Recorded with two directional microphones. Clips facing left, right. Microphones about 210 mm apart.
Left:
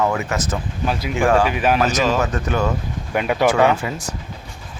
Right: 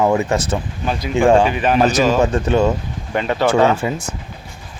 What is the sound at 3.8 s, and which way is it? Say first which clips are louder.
Speech: right 5 dB; 25° right (ahead or behind).